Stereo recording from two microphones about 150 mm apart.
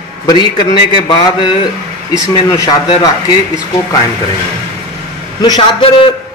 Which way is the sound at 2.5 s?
30° left (ahead or behind).